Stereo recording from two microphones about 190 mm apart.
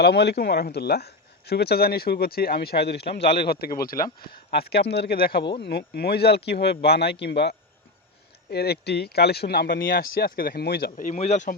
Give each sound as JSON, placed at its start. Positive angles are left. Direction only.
{"t": 0.0, "sound": "speech", "side_deg": 60}
{"t": 10.9, "sound": "speech", "side_deg": 40}